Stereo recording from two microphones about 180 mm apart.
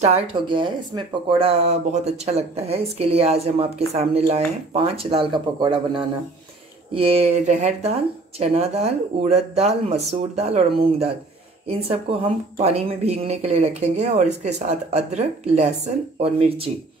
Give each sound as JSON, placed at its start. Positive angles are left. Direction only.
{"t": 0.0, "sound": "speech", "side_deg": -35}